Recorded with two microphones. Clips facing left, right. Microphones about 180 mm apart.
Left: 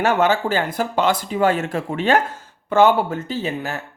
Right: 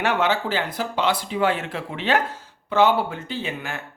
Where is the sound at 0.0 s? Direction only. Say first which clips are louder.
Left 4 dB; 45° left (ahead or behind).